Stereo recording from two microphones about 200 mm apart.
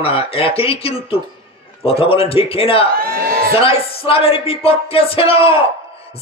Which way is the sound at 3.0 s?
50° right (ahead or behind).